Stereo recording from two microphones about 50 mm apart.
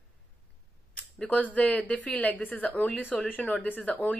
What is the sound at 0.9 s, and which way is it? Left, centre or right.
A woman's voice, left.